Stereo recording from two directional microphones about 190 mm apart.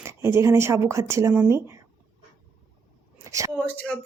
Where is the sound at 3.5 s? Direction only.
5° left (ahead or behind).